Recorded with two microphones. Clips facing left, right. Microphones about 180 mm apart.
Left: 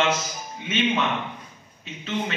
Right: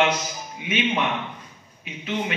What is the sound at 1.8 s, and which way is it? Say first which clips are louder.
Speech: right 1 dB; 10° right (ahead or behind).